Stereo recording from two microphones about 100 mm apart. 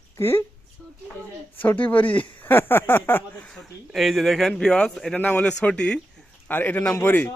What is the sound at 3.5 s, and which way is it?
A man's voice, centre (ahead or behind).